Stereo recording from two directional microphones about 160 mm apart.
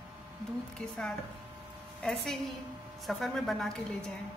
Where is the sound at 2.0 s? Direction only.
5° left (ahead or behind).